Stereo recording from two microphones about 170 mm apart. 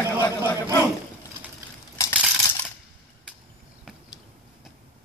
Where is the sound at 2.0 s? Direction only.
15° left (ahead or behind).